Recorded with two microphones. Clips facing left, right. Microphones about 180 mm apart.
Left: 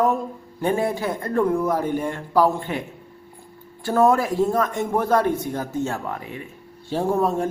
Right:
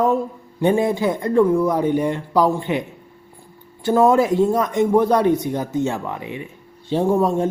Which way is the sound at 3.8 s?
20° right (ahead or behind).